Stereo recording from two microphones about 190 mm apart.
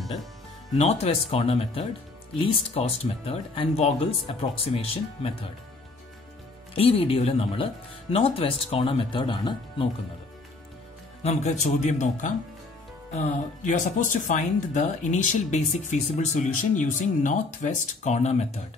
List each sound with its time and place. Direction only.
0.0 s speech: centre (ahead or behind)
0.7 s speech: 35° left (ahead or behind)
6.7 s speech: 30° left (ahead or behind)
11.2 s speech: 35° left (ahead or behind)